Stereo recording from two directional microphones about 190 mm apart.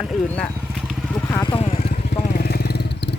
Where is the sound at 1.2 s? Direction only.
20° left (ahead or behind); by 2.2 s 35° left (ahead or behind).